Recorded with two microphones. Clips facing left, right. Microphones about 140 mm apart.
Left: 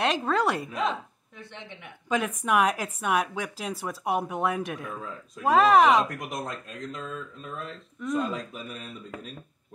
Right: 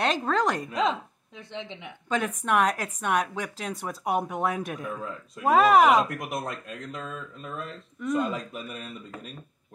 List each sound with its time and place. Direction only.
0.0 s speech: 5° left (ahead or behind)
1.5 s speech: 20° right (ahead or behind)
2.0 s speech: 5° left (ahead or behind)